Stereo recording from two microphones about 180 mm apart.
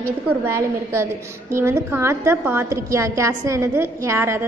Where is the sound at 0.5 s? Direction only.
15° right (ahead or behind).